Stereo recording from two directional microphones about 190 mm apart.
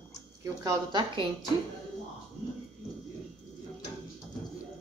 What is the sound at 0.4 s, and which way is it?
Speech, 20° right (ahead or behind).